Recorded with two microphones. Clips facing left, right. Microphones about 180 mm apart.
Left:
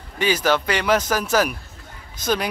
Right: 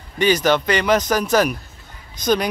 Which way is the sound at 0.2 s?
5° left (ahead or behind).